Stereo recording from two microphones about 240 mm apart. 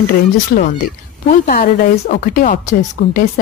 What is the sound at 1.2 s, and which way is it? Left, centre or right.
Speech, left.